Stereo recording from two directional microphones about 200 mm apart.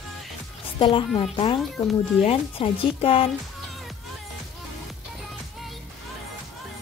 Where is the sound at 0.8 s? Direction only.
25° left (ahead or behind).